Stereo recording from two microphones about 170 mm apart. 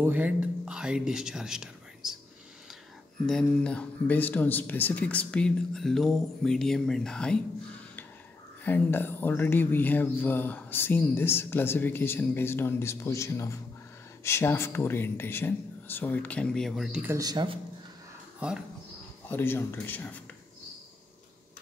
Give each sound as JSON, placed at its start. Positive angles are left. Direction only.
{"t": 0.0, "sound": "speech", "side_deg": -10}
{"t": 3.3, "sound": "speech", "side_deg": 5}
{"t": 8.6, "sound": "speech", "side_deg": 10}
{"t": 17.1, "sound": "speech", "side_deg": -20}
{"t": 19.2, "sound": "speech", "side_deg": 15}